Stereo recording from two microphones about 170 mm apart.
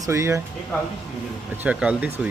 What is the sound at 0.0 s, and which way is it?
Speech, 15° right (ahead or behind).